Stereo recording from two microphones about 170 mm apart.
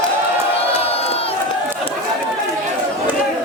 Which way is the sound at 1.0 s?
35° left (ahead or behind).